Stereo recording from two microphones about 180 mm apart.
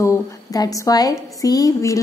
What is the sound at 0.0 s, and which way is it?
A woman's voice, 20° left (ahead or behind).